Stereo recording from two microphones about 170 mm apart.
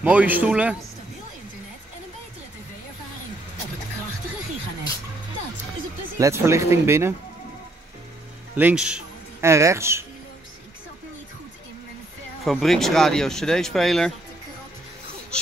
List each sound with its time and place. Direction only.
0.0 s speech: 10° right (ahead or behind)
6.1 s speech: 15° right (ahead or behind)
8.5 s speech: 10° right (ahead or behind)
9.4 s speech: 15° right (ahead or behind)
12.4 s speech: centre (ahead or behind)